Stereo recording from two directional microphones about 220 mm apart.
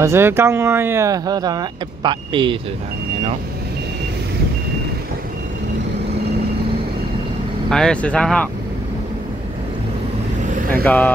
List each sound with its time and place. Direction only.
0.0 s speech: 10° right (ahead or behind)
7.7 s speech: 5° left (ahead or behind)
10.4 s vehicle: 35° right (ahead or behind)
10.7 s speech: 5° left (ahead or behind)